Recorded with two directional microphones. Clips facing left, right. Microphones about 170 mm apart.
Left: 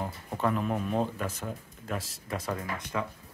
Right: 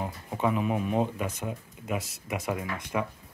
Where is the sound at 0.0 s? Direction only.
5° right (ahead or behind).